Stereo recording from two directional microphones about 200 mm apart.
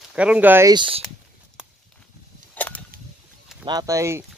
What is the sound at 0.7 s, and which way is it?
Speech, 25° right (ahead or behind).